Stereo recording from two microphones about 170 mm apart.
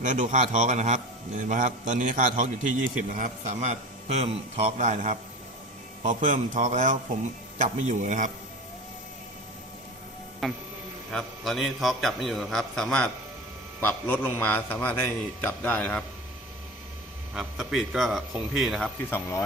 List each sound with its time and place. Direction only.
0.0 s a man's voice: 50° right (ahead or behind)
10.4 s a man's voice: centre (ahead or behind)
17.3 s a man's voice: centre (ahead or behind)
19.1 s a man's voice: 15° left (ahead or behind)